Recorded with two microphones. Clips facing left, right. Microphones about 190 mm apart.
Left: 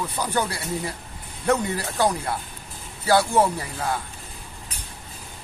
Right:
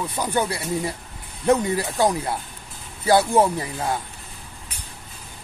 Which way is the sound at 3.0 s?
20° right (ahead or behind).